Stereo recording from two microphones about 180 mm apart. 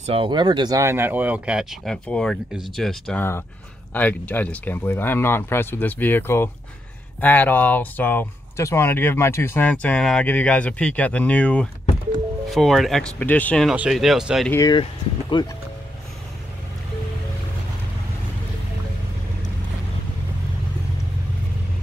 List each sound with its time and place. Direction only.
0.0 s speech: 30° right (ahead or behind); by 14.5 s centre (ahead or behind)
14.5 s speech: 20° left (ahead or behind)